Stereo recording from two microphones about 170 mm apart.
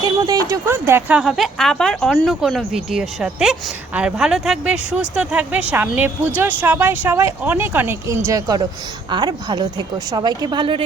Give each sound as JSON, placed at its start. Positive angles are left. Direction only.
{"t": 0.0, "sound": "a woman's voice", "side_deg": -20}